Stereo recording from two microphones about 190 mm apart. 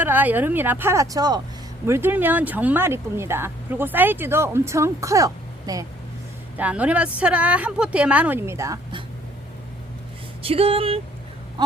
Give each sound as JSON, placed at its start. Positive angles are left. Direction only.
{"t": 0.0, "sound": "speech", "side_deg": -10}
{"t": 6.6, "sound": "speech", "side_deg": -5}
{"t": 10.4, "sound": "speech", "side_deg": -30}